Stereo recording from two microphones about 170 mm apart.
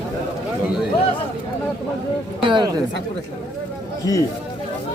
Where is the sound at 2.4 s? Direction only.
30° right (ahead or behind).